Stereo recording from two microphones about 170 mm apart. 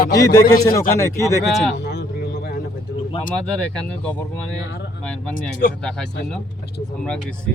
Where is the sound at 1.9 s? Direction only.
75° left (ahead or behind).